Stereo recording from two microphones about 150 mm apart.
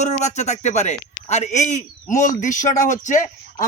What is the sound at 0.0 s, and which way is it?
A man's voice, 50° left (ahead or behind).